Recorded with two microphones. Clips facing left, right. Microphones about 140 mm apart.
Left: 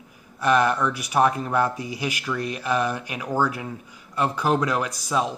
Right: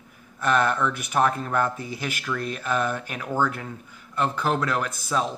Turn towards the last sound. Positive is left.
turn(degrees=10)  # may be behind; listen again after turning